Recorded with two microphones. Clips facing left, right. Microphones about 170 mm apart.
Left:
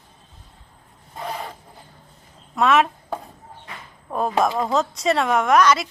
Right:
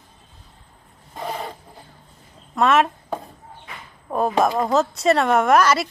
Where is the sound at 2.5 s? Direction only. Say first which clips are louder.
Even; centre (ahead or behind).